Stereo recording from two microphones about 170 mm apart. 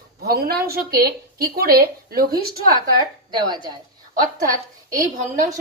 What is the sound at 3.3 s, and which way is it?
Speech, 25° right (ahead or behind).